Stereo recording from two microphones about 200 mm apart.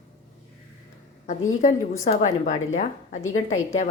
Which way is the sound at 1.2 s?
40° left (ahead or behind).